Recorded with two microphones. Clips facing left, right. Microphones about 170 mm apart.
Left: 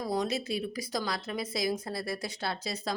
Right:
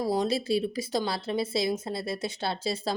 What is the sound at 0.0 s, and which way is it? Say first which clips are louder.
A woman's voice: right 4 dB; 30° right (ahead or behind).